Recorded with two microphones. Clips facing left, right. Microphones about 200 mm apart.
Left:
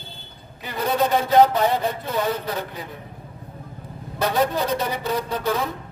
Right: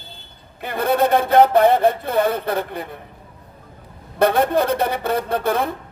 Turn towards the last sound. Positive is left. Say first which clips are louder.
# right 4 dB
turn(degrees=-55)  # may be behind; listen again after turning